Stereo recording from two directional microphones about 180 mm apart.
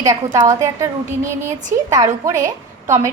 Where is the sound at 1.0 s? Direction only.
45° right (ahead or behind).